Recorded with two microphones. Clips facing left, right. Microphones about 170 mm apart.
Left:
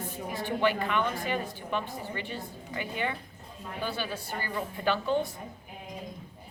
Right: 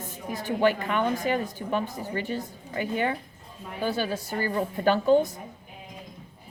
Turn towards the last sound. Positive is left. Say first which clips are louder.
# right 7 dB
turn(degrees=-45)  # may be behind; listen again after turning